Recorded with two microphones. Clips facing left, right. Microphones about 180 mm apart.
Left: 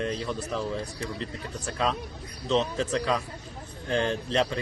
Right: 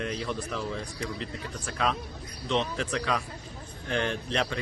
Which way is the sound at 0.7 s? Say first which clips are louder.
Left 2 dB; 35° left (ahead or behind).